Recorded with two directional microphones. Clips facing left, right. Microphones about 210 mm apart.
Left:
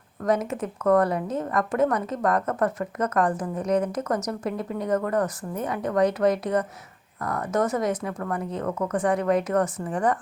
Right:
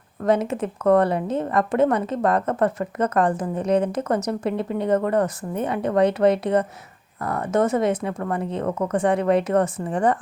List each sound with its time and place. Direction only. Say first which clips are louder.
0.3 s a woman's voice: right 4 dB; 30° right (ahead or behind)